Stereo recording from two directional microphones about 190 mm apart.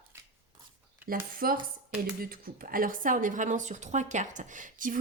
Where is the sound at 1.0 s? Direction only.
50° right (ahead or behind).